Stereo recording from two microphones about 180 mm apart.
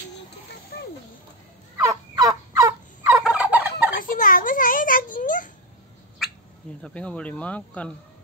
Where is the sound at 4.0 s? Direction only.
50° left (ahead or behind).